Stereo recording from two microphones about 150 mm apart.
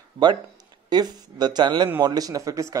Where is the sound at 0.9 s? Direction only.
25° right (ahead or behind).